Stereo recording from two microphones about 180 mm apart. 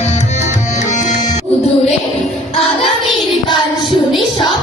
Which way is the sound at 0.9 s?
45° left (ahead or behind).